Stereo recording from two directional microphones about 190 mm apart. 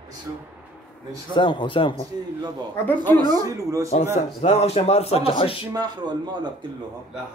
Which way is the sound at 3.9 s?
35° left (ahead or behind).